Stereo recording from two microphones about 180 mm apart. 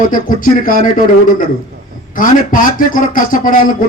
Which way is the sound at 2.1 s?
50° left (ahead or behind).